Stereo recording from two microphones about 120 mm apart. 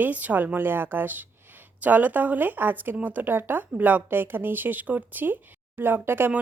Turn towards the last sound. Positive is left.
turn(degrees=-20)  # may be behind; listen again after turning